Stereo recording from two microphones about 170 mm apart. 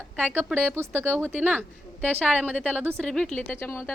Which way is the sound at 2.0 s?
10° left (ahead or behind).